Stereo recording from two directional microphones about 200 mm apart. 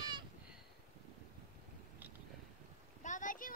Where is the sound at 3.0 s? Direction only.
40° left (ahead or behind).